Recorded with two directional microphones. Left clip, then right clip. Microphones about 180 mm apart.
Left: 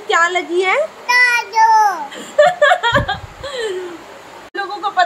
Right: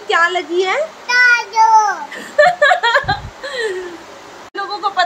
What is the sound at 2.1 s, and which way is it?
Chuckle, centre (ahead or behind).